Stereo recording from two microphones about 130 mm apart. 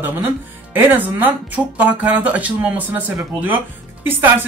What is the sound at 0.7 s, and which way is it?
Speech, 15° right (ahead or behind).